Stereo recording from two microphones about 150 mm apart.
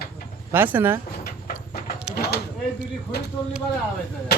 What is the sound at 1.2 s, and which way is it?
Clip-clop, 90° left.